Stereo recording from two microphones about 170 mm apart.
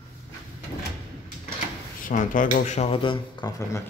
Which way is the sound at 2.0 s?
50° left (ahead or behind).